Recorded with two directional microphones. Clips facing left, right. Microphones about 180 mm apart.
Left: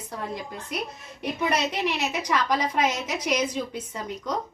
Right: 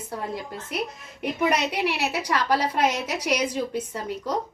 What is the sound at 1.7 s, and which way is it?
A woman's voice, 10° right (ahead or behind).